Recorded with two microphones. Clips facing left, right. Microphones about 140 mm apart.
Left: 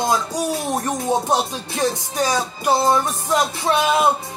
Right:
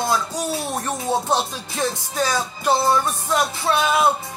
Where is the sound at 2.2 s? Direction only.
15° left (ahead or behind).